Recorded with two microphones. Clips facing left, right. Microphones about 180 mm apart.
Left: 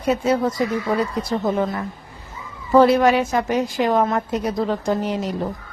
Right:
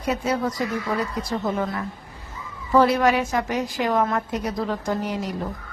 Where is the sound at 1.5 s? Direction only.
25° left (ahead or behind).